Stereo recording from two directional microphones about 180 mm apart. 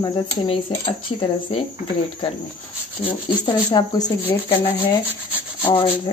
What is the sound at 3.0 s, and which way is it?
Speech, 25° left (ahead or behind).